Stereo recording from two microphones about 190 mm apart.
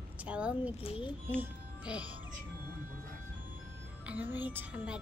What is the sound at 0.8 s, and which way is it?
Speech, 30° left (ahead or behind).